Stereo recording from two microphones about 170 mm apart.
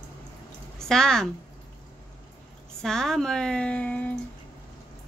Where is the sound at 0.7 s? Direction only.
5° left (ahead or behind).